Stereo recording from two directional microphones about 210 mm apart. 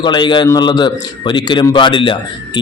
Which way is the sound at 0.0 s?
20° left (ahead or behind).